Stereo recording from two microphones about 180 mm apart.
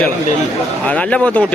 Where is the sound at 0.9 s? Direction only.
5° left (ahead or behind).